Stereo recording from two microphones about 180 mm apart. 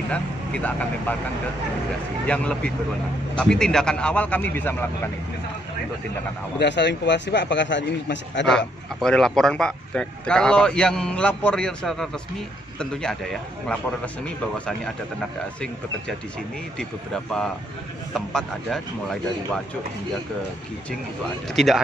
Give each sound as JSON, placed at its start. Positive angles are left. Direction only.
{"t": 0.1, "sound": "speech", "side_deg": 5}
{"t": 2.2, "sound": "speech", "side_deg": 5}
{"t": 6.6, "sound": "a man's voice", "side_deg": 70}
{"t": 8.5, "sound": "a man's voice", "side_deg": 5}
{"t": 16.7, "sound": "a man's voice", "side_deg": 5}
{"t": 21.5, "sound": "a man's voice", "side_deg": 0}